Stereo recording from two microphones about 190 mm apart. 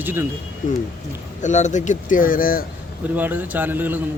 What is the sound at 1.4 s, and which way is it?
Speech, 40° left (ahead or behind).